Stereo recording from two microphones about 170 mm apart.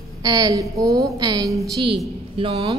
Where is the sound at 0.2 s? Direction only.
20° right (ahead or behind).